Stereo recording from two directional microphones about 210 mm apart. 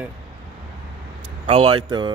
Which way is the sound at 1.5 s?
25° right (ahead or behind).